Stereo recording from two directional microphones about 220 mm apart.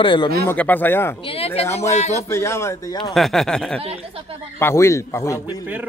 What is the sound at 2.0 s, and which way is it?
Speech, 30° left (ahead or behind).